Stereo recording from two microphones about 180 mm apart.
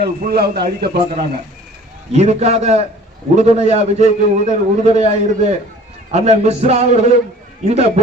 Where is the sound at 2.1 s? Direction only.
40° right (ahead or behind).